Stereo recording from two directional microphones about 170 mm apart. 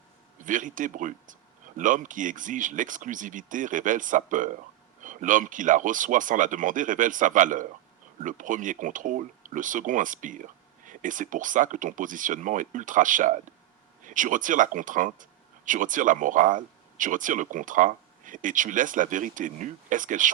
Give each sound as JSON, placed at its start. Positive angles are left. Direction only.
{"t": 0.3, "sound": "speech", "side_deg": -50}